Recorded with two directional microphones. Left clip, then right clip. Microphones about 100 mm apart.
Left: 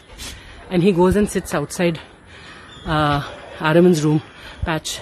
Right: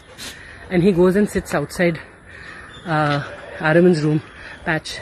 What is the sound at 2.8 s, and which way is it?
Speech, 25° left (ahead or behind).